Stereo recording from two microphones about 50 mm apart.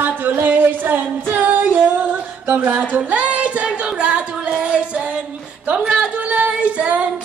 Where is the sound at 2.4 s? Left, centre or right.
Right.